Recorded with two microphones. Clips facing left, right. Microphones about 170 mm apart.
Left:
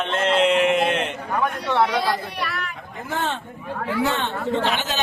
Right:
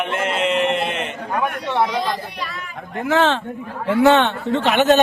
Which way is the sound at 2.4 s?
70° left (ahead or behind).